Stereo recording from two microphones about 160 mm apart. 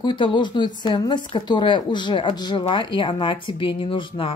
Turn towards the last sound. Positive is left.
turn(degrees=30)  # may be behind; listen again after turning